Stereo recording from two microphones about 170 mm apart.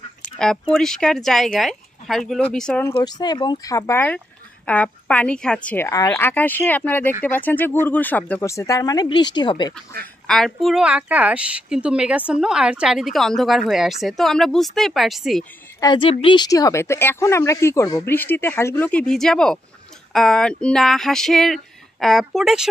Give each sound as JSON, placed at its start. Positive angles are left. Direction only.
{"t": 0.4, "sound": "a woman's voice", "side_deg": 5}
{"t": 2.9, "sound": "a woman's voice", "side_deg": 25}
{"t": 10.2, "sound": "a woman's voice", "side_deg": 0}
{"t": 15.8, "sound": "a woman's voice", "side_deg": 30}